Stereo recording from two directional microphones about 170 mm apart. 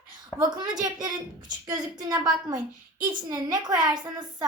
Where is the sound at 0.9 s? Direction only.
25° right (ahead or behind).